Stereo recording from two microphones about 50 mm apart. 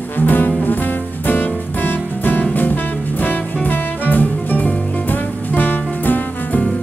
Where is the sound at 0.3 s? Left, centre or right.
Left.